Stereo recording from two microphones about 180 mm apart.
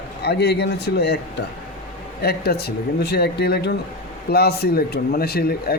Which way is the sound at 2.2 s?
65° left (ahead or behind).